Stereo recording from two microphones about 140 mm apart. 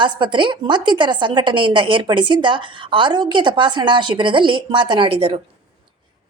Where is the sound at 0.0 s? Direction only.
35° right (ahead or behind).